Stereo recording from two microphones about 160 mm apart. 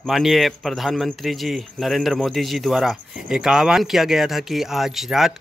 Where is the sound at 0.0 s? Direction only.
Centre (ahead or behind).